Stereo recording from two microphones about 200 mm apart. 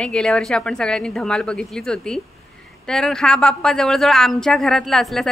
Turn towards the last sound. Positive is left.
turn(degrees=0)  # may be behind; listen again after turning